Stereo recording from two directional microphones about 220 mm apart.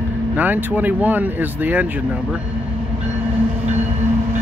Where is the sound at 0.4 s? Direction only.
5° right (ahead or behind).